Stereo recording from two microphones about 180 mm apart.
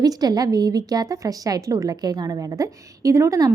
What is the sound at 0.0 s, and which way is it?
A woman's voice, 20° right (ahead or behind).